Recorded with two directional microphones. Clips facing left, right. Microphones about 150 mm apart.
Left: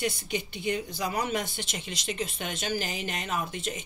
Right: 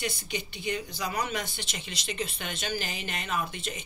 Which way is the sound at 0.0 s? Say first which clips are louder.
Left 3 dB; 50° left (ahead or behind).